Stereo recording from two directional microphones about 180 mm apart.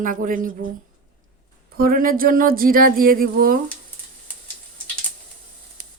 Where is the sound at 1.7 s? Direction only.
55° right (ahead or behind).